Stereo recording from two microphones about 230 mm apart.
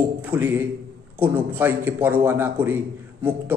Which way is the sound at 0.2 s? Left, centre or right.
Centre.